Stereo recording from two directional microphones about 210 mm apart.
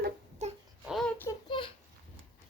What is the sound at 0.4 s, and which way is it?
Baby cry, 35° right (ahead or behind).